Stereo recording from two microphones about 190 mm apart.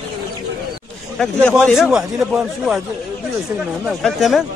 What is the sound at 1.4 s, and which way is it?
A man's voice, 5° left (ahead or behind).